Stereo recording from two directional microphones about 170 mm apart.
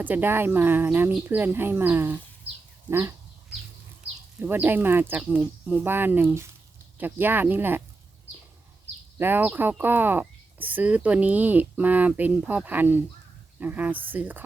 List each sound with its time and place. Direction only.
0.0 s speech: 10° right (ahead or behind)
4.4 s speech: 10° right (ahead or behind)
9.1 s speech: 10° right (ahead or behind)